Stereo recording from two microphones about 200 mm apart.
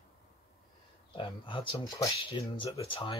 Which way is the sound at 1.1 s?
25° left (ahead or behind).